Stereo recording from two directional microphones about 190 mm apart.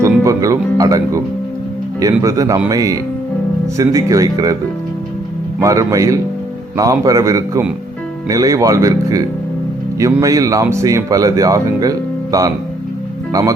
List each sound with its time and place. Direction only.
0.0 s music: 15° right (ahead or behind)
2.0 s speech: 20° right (ahead or behind)
5.5 s speech: 15° right (ahead or behind)